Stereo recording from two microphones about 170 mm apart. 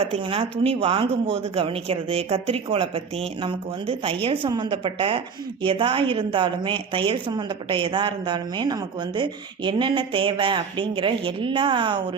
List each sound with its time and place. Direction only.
0.0 s a woman's voice: 35° right (ahead or behind)